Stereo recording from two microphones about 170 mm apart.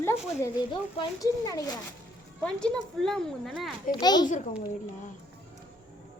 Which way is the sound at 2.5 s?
5° left (ahead or behind).